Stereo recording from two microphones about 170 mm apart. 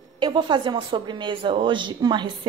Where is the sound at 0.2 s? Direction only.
25° right (ahead or behind).